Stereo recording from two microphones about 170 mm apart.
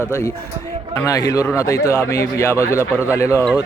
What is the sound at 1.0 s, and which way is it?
Speech, 20° left (ahead or behind).